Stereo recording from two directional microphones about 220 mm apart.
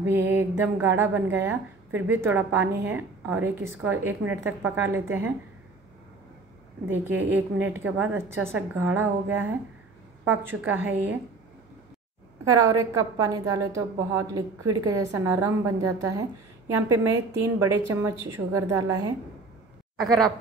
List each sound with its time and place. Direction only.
0.0 s a woman's voice: 10° right (ahead or behind)
7.2 s a woman's voice: 10° right (ahead or behind)
12.4 s a woman's voice: 15° right (ahead or behind)
20.0 s speech: centre (ahead or behind)